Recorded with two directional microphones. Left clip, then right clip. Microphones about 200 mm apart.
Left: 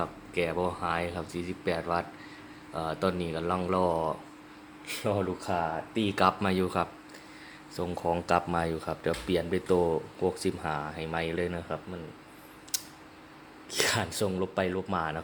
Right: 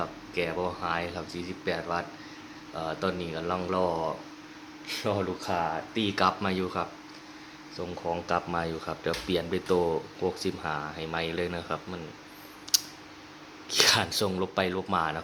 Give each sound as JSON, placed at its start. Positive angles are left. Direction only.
{"t": 0.0, "sound": "speech", "side_deg": 15}
{"t": 8.0, "sound": "speech", "side_deg": 20}
{"t": 12.7, "sound": "typing", "side_deg": -5}
{"t": 13.7, "sound": "speech", "side_deg": 0}